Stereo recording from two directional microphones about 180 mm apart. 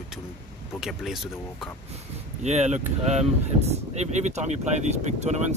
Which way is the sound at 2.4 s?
40° right (ahead or behind).